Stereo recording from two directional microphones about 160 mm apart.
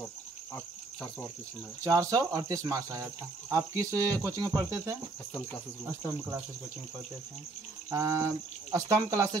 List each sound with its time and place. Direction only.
1.9 s cricket: 20° right (ahead or behind)
5.9 s cricket: 15° right (ahead or behind)
7.9 s cricket: 20° right (ahead or behind)